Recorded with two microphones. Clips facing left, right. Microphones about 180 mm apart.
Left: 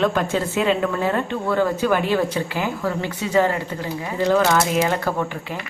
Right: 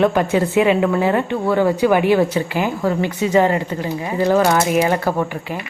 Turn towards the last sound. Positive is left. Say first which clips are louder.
# right 4 dB
turn(degrees=-15)  # may be behind; listen again after turning